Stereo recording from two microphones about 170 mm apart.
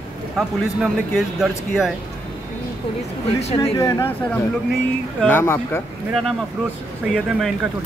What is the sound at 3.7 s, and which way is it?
Speech, 15° left (ahead or behind).